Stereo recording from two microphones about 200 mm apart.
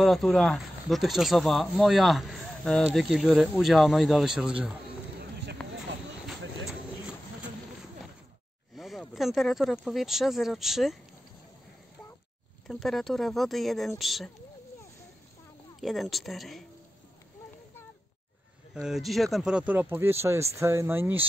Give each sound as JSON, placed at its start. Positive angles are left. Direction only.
{"t": 0.0, "sound": "speech", "side_deg": 0}
{"t": 6.2, "sound": "a sound", "side_deg": 0}
{"t": 8.7, "sound": "speech", "side_deg": 0}
{"t": 12.6, "sound": "speech", "side_deg": 0}
{"t": 15.8, "sound": "speech", "side_deg": 0}
{"t": 18.7, "sound": "speech", "side_deg": 0}